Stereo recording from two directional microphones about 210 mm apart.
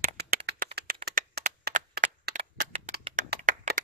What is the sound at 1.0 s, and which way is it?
Crushing, 45° right (ahead or behind).